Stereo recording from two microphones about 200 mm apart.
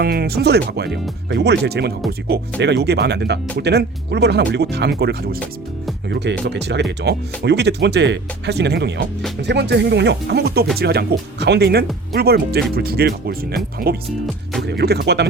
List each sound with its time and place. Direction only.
0.0 s speech: 50° right (ahead or behind)